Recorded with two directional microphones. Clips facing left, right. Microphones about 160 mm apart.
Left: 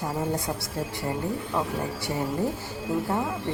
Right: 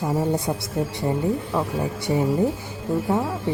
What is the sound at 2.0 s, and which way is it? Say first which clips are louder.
Speech: right 8 dB; 15° right (ahead or behind).